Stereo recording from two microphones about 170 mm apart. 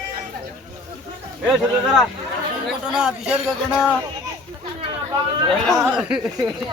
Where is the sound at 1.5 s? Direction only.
Centre (ahead or behind).